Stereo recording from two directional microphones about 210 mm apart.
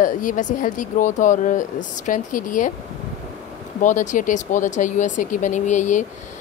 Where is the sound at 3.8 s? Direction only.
35° left (ahead or behind).